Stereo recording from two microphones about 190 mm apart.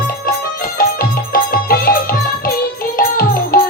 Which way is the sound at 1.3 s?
50° left (ahead or behind).